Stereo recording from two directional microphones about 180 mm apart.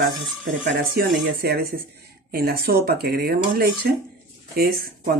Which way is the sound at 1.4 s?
60° right (ahead or behind).